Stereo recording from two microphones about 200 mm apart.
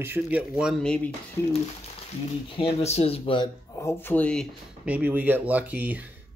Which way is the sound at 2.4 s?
25° left (ahead or behind).